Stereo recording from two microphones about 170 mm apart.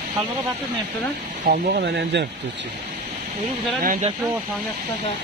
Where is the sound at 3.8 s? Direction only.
50° right (ahead or behind).